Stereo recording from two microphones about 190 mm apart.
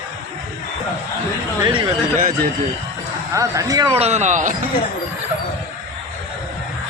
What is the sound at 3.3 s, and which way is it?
Speech, 20° right (ahead or behind).